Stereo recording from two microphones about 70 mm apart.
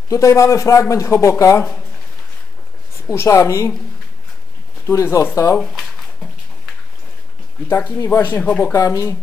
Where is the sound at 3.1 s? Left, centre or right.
Left.